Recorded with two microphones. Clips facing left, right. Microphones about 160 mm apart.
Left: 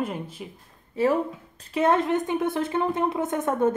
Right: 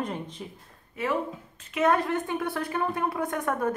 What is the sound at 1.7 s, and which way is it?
A woman's voice, 25° left (ahead or behind).